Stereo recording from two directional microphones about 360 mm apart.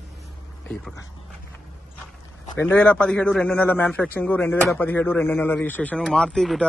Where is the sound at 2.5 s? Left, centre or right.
Centre.